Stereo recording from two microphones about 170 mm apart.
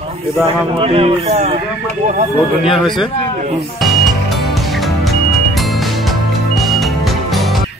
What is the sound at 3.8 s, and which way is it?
Music, centre (ahead or behind).